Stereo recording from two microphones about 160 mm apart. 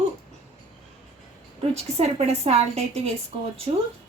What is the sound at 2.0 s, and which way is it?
A woman's voice, 40° right (ahead or behind).